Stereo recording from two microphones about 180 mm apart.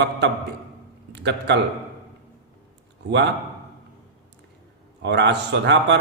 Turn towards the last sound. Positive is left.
turn(degrees=-75)  # may be behind; listen again after turning